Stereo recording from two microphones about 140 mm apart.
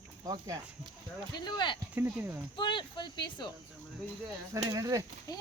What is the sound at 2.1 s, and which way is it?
Speech, 15° right (ahead or behind).